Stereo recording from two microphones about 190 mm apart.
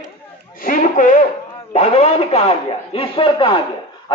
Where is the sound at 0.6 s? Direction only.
45° left (ahead or behind); by 3.6 s 25° left (ahead or behind).